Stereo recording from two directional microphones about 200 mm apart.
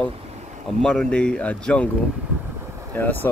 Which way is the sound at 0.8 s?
5° left (ahead or behind).